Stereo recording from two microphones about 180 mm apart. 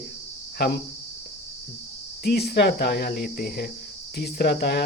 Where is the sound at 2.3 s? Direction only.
60° left (ahead or behind).